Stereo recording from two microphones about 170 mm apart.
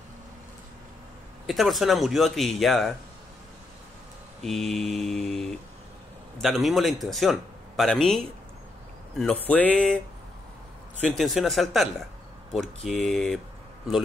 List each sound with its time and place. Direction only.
1.5 s a man's voice: centre (ahead or behind)
4.4 s a man's voice: centre (ahead or behind)
11.0 s a man's voice: centre (ahead or behind)